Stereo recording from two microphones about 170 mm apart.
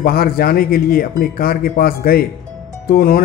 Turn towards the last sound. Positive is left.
turn(degrees=60)  # may be behind; listen again after turning